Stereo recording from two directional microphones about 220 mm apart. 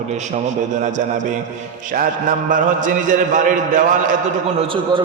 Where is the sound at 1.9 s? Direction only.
40° right (ahead or behind).